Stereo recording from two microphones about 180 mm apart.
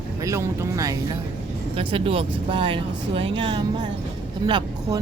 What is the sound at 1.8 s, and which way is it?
Speech, 30° right (ahead or behind).